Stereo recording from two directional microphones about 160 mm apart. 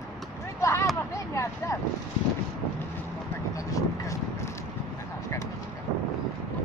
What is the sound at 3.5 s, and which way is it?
Speech, 20° left (ahead or behind).